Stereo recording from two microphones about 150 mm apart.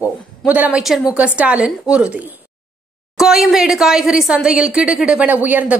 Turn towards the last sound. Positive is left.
turn(degrees=-10)  # may be behind; listen again after turning